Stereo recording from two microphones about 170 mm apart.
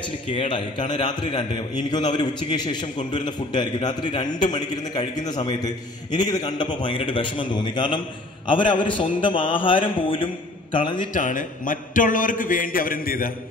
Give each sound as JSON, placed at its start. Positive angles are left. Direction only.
{"t": 0.3, "sound": "a man's voice", "side_deg": 30}
{"t": 11.1, "sound": "a man's voice", "side_deg": 50}